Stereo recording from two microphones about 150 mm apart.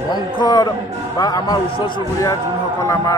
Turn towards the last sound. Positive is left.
turn(degrees=20)  # may be behind; listen again after turning